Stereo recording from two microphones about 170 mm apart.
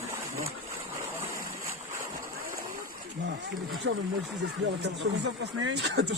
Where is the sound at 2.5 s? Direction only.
55° right (ahead or behind).